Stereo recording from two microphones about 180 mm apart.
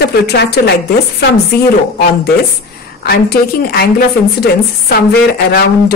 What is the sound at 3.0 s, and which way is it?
Speech, 60° left (ahead or behind).